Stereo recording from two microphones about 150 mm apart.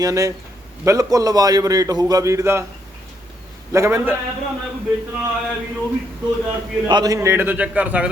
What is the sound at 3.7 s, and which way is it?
Speech, 20° right (ahead or behind).